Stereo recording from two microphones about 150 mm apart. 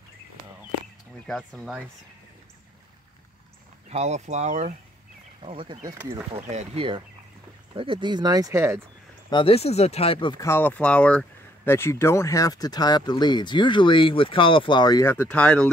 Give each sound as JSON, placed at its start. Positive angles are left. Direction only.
{"t": 1.2, "sound": "speech", "side_deg": 5}
{"t": 3.9, "sound": "speech", "side_deg": -50}
{"t": 5.4, "sound": "speech", "side_deg": -40}
{"t": 5.9, "sound": "speech", "side_deg": -20}
{"t": 6.3, "sound": "speech", "side_deg": -45}
{"t": 9.3, "sound": "speech", "side_deg": 40}
{"t": 10.4, "sound": "speech", "side_deg": 15}
{"t": 15.0, "sound": "speech", "side_deg": 10}